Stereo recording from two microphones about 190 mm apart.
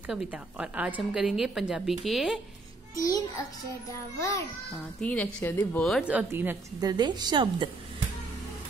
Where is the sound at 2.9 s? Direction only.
20° left (ahead or behind).